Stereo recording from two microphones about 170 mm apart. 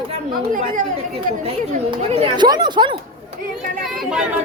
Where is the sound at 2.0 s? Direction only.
35° right (ahead or behind).